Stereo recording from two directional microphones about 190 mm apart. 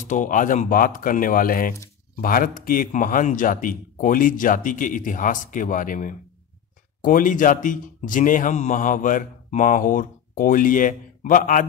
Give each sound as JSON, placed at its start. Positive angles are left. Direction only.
{"t": 0.1, "sound": "a man's voice", "side_deg": 45}